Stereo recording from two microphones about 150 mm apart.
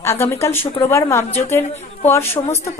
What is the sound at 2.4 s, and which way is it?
Speech, 30° left (ahead or behind).